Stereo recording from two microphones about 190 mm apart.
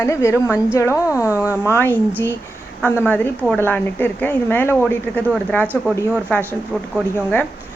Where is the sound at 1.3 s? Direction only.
10° right (ahead or behind).